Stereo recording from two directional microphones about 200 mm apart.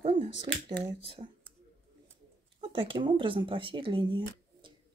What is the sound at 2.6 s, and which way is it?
Speech, 25° right (ahead or behind).